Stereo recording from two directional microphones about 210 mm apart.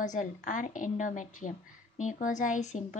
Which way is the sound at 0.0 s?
35° left (ahead or behind).